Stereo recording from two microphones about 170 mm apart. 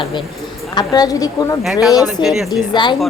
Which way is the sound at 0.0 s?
30° left (ahead or behind).